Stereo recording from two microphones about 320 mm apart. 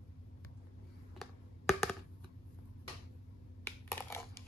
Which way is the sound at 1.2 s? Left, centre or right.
Centre.